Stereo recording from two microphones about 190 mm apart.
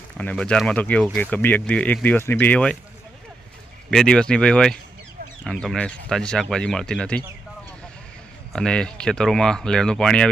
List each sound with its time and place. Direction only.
0.2 s speech: 5° left (ahead or behind)
3.9 s speech: 5° left (ahead or behind)
8.5 s speech: 5° left (ahead or behind)